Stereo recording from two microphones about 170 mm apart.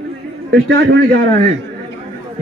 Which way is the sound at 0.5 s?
90° right.